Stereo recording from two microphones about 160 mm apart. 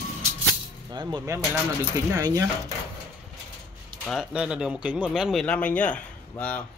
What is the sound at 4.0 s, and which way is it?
Speech, 5° right (ahead or behind).